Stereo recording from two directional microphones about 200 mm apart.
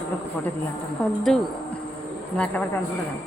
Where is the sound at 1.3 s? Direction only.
Centre (ahead or behind).